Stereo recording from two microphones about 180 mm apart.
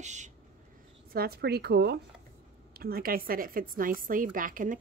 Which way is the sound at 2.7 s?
55° right (ahead or behind).